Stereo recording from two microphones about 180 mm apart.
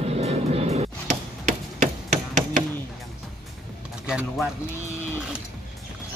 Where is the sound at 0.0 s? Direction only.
35° right (ahead or behind).